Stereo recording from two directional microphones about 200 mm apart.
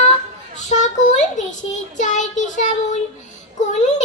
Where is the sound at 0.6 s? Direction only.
35° left (ahead or behind).